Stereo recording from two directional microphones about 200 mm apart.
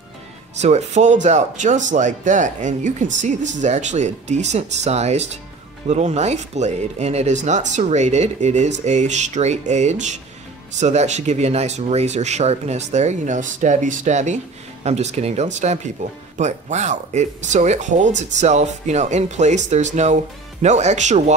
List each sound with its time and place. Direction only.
0.6 s speech: 35° right (ahead or behind)